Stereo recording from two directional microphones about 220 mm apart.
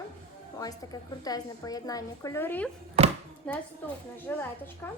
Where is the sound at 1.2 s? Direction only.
15° left (ahead or behind).